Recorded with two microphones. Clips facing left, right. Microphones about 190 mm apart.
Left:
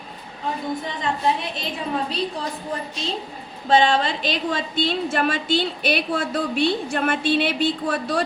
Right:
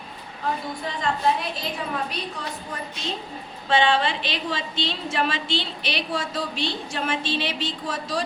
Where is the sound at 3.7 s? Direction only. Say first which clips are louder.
Left 3 dB; 40° left (ahead or behind).